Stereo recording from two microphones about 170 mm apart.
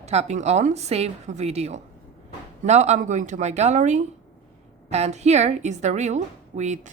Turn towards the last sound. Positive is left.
turn(degrees=-45)  # may be behind; listen again after turning